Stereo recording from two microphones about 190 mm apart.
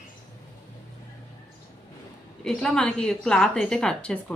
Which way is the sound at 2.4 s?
5° left (ahead or behind).